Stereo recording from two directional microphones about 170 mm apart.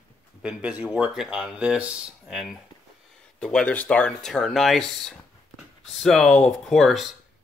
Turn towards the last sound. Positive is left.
turn(degrees=0)  # may be behind; listen again after turning